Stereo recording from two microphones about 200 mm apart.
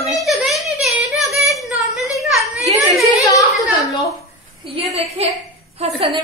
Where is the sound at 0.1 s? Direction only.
Centre (ahead or behind).